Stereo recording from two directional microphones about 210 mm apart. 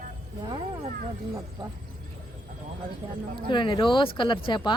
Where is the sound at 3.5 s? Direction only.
20° left (ahead or behind).